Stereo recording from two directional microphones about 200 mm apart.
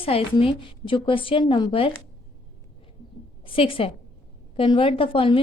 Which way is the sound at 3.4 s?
25° left (ahead or behind).